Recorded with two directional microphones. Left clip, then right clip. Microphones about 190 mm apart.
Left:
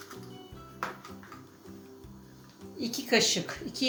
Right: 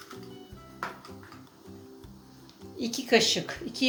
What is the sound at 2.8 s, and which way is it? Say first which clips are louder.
Speech: right 3 dB; 35° right (ahead or behind).